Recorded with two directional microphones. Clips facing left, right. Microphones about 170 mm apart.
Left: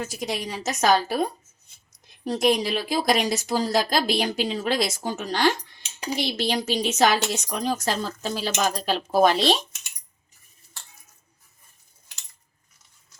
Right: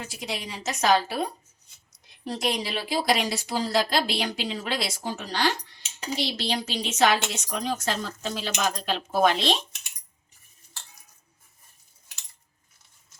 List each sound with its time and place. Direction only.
0.0 s speech: 45° left (ahead or behind)